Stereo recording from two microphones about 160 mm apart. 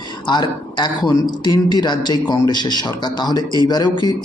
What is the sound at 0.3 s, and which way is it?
Speech, 25° left (ahead or behind).